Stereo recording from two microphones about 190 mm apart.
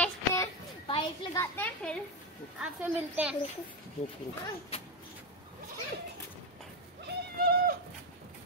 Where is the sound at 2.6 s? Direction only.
5° right (ahead or behind).